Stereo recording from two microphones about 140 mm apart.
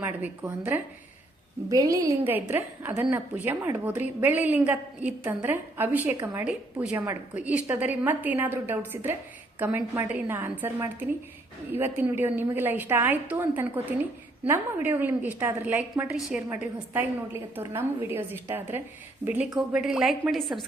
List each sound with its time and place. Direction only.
0.0 s a woman's voice: 10° right (ahead or behind)
1.7 s a woman's voice: 25° right (ahead or behind); by 20.7 s centre (ahead or behind)